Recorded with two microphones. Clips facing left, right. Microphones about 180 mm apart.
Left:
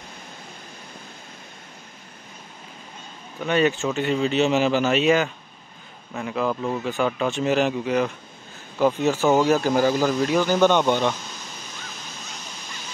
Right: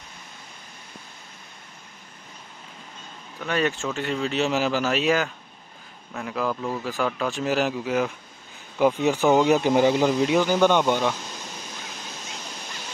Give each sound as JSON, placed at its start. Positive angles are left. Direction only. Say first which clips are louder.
{"t": 3.4, "sound": "speech", "louder": "left 4 dB", "side_deg": 0}
{"t": 8.7, "sound": "speech", "louder": "even", "side_deg": -15}